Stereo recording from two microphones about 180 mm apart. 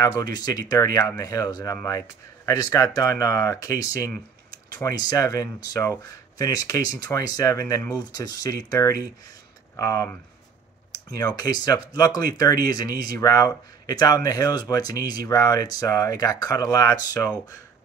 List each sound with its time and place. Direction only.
0.2 s speech: 20° left (ahead or behind)
11.1 s speech: 20° left (ahead or behind)